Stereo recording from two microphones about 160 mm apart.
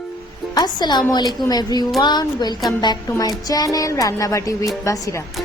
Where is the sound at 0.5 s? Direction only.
25° left (ahead or behind).